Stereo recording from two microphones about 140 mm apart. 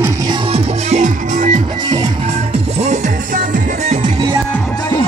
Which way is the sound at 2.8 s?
60° right (ahead or behind).